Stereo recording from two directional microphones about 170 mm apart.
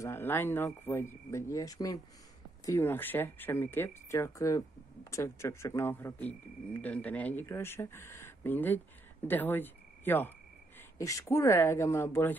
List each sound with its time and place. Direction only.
0.0 s speech: 15° left (ahead or behind)